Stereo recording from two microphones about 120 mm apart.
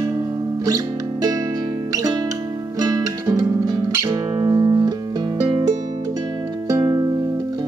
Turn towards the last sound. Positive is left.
turn(degrees=-30)  # may be behind; listen again after turning